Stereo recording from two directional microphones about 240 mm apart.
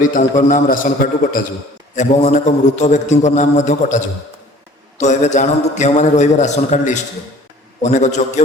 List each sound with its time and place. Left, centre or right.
0.0 s a man's voice: left